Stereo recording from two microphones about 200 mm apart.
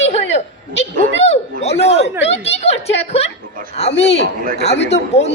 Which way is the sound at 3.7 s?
30° left (ahead or behind).